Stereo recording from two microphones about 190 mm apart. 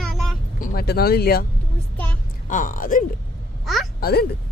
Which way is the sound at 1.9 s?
10° left (ahead or behind).